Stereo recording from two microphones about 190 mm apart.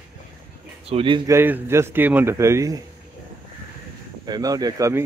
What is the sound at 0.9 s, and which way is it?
Speech, 30° right (ahead or behind).